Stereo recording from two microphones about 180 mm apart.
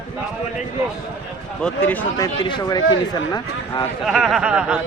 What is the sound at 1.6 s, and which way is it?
Speech, 5° left (ahead or behind).